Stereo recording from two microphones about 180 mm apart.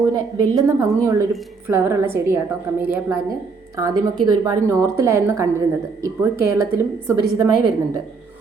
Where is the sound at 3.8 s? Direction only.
20° right (ahead or behind).